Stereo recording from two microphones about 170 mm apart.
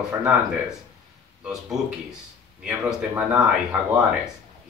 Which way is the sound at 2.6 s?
15° right (ahead or behind).